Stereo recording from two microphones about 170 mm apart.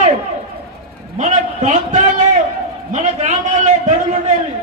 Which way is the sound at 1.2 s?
45° right (ahead or behind).